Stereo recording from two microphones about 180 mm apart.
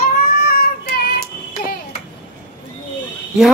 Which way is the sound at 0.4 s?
60° left (ahead or behind).